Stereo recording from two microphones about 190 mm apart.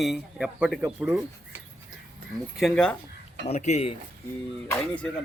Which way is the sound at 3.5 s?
35° left (ahead or behind).